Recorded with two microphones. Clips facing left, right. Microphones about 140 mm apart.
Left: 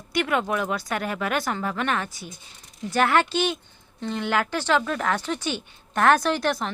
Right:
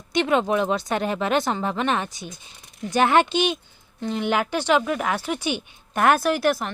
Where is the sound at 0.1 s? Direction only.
25° right (ahead or behind).